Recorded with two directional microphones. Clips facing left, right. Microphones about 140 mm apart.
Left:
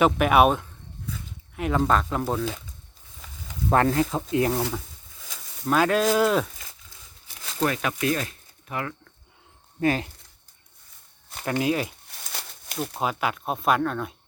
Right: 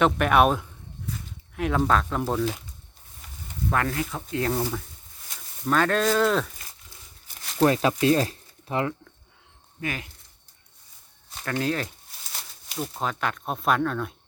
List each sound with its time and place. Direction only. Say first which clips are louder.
0.0 s speech: left 1 dB; 5° left (ahead or behind)
3.7 s speech: left 6 dB; 30° left (ahead or behind); by 4.6 s 15° left (ahead or behind)
5.6 s speech: left 1 dB; 5° left (ahead or behind)
7.6 s speech: right 5 dB; 30° right (ahead or behind)
9.8 s speech: left 9 dB; 35° left (ahead or behind)
11.4 s speech: left 3 dB; 15° left (ahead or behind)
12.3 s a sound: left 3 dB; 65° left (ahead or behind)
12.8 s speech: left 2 dB; 5° left (ahead or behind)